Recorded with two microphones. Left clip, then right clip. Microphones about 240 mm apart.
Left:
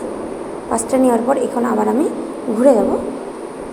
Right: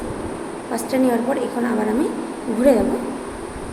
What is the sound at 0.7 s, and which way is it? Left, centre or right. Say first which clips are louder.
A woman's voice: left 5 dB; centre.